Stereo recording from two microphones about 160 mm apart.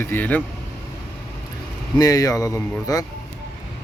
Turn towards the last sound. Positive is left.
turn(degrees=20)  # may be behind; listen again after turning